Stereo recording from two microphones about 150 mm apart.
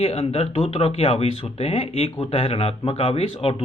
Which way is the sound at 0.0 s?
45° left (ahead or behind).